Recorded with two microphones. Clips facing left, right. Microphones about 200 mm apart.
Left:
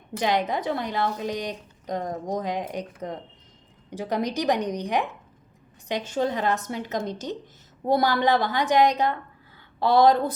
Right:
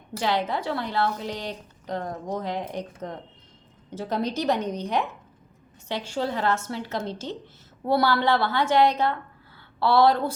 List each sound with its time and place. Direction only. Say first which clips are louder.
0.2 s a woman's voice: left 1 dB; 15° left (ahead or behind)